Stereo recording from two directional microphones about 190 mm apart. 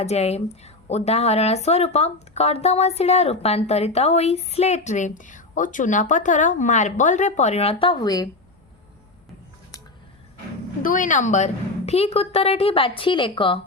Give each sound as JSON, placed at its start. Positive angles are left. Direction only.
{"t": 0.0, "sound": "speech", "side_deg": 35}
{"t": 10.8, "sound": "speech", "side_deg": 45}